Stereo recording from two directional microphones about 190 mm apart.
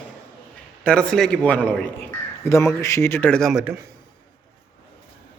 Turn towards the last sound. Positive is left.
turn(degrees=-5)  # may be behind; listen again after turning